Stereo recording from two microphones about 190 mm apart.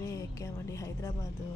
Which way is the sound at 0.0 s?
15° left (ahead or behind).